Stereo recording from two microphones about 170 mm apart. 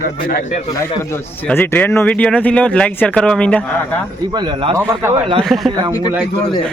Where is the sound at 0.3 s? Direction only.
55° left (ahead or behind).